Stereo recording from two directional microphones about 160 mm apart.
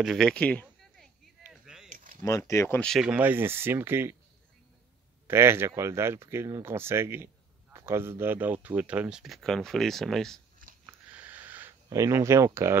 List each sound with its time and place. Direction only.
0.0 s speech: centre (ahead or behind)
1.5 s a sound: 5° right (ahead or behind)
2.2 s speech: 20° left (ahead or behind)
2.8 s speech: centre (ahead or behind)
5.2 s speech: 15° right (ahead or behind); by 10.4 s centre (ahead or behind)
10.9 s a sound: 10° right (ahead or behind)